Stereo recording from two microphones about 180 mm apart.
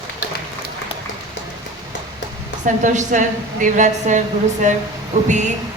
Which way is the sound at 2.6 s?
45° right (ahead or behind).